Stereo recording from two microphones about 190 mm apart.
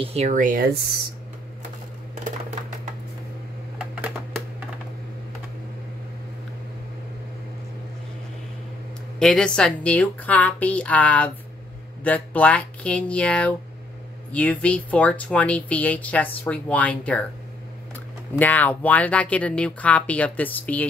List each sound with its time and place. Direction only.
0.0 s speech: 35° right (ahead or behind)
3.7 s a sound: 5° right (ahead or behind)
9.2 s speech: 5° left (ahead or behind)